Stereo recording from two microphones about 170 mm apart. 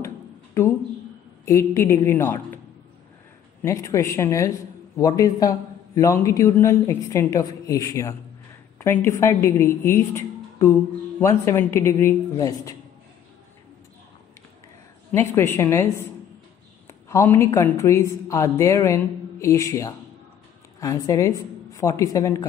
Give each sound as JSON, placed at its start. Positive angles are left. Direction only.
{"t": 1.4, "sound": "a woman's voice", "side_deg": 15}
{"t": 3.6, "sound": "a woman's voice", "side_deg": 15}
{"t": 15.0, "sound": "a woman's voice", "side_deg": 15}
{"t": 17.1, "sound": "a woman's voice", "side_deg": 15}